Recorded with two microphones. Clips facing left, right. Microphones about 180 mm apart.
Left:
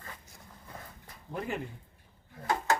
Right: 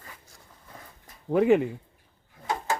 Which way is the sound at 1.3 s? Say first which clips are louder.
Right 16 dB; 90° right.